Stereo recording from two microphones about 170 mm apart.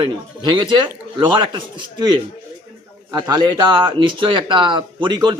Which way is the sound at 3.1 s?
20° right (ahead or behind).